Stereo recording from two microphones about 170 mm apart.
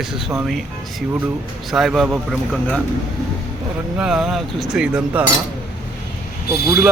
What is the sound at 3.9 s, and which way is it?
Speech, 5° right (ahead or behind).